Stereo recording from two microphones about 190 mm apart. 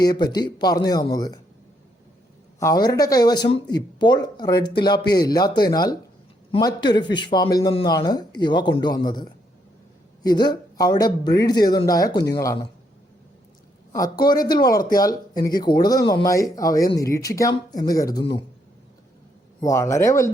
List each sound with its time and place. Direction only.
0.0 s speech: 20° left (ahead or behind)
2.6 s speech: 20° left (ahead or behind)
13.9 s speech: 20° left (ahead or behind)
19.5 s speech: 15° left (ahead or behind)